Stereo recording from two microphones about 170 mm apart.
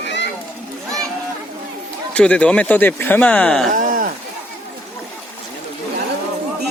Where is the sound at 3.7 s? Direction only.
50° right (ahead or behind).